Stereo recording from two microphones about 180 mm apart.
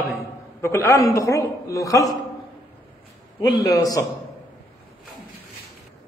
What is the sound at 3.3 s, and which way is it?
Speech, 25° left (ahead or behind).